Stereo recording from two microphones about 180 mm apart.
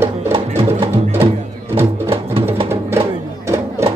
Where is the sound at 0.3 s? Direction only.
35° right (ahead or behind).